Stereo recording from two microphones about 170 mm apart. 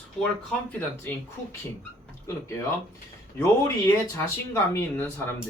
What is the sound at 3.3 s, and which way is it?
Speech, 15° left (ahead or behind).